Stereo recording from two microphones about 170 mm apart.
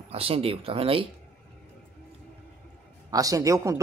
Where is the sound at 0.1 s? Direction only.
35° right (ahead or behind).